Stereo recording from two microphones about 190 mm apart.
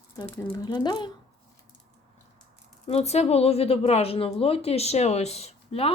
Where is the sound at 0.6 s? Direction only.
20° left (ahead or behind).